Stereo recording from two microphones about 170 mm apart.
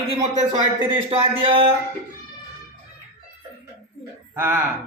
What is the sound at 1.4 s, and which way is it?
Speech, 30° right (ahead or behind).